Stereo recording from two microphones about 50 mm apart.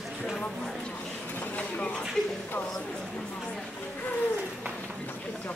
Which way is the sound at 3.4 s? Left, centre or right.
Centre.